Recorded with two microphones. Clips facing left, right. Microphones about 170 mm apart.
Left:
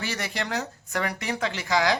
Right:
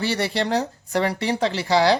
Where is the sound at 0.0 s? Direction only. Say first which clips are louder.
Right 8 dB; 30° right (ahead or behind).